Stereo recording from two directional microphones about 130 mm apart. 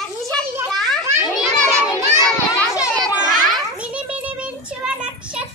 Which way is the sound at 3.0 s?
Centre (ahead or behind).